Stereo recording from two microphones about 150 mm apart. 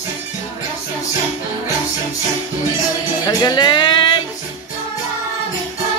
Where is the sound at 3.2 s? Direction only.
25° left (ahead or behind).